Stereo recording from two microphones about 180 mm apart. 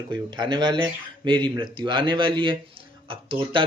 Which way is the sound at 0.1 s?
25° right (ahead or behind).